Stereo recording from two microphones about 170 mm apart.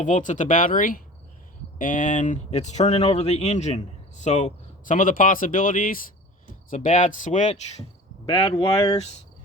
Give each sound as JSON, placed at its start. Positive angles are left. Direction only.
{"t": 0.0, "sound": "speech", "side_deg": 45}
{"t": 8.3, "sound": "speech", "side_deg": 35}
{"t": 8.7, "sound": "speech", "side_deg": 20}